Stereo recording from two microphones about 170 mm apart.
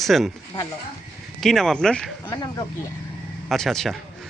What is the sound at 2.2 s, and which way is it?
Speech, 25° left (ahead or behind).